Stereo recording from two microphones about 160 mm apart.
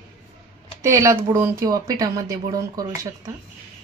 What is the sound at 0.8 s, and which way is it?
Speech, 20° right (ahead or behind).